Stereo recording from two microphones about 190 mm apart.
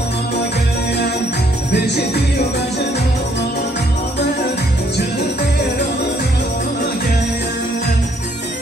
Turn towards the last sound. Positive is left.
turn(degrees=60)  # may be behind; listen again after turning